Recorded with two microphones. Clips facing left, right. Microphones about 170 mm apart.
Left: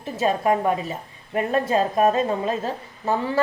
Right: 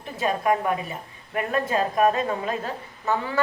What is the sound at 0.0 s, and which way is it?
A woman's voice, 25° left (ahead or behind).